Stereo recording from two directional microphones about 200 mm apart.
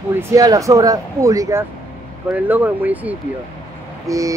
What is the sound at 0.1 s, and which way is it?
Speech, 15° right (ahead or behind).